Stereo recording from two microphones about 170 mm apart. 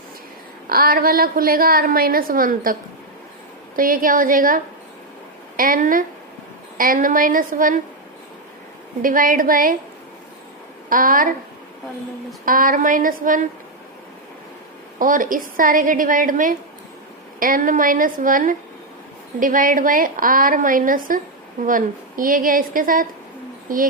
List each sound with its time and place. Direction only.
0.7 s a woman's voice: 60° right (ahead or behind)
3.8 s a woman's voice: 55° right (ahead or behind)
9.0 s a woman's voice: 55° right (ahead or behind)
10.8 s a woman's voice: 55° right (ahead or behind)
12.5 s a woman's voice: 55° right (ahead or behind)
14.9 s a woman's voice: 50° right (ahead or behind)